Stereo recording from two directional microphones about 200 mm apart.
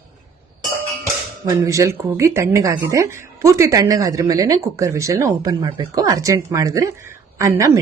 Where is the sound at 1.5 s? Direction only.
15° right (ahead or behind).